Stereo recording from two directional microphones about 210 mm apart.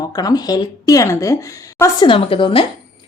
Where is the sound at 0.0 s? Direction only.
15° left (ahead or behind).